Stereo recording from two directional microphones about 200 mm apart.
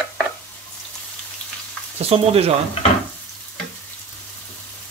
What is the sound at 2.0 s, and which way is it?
Speech, 30° right (ahead or behind).